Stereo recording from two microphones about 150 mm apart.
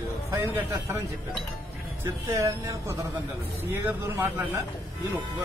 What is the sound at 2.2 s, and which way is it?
A man's voice, 20° right (ahead or behind).